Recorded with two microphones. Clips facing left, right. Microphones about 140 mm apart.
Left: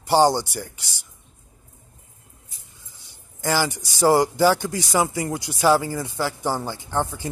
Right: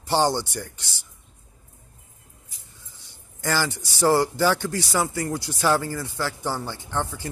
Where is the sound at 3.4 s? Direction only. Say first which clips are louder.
Left 3 dB; 15° left (ahead or behind).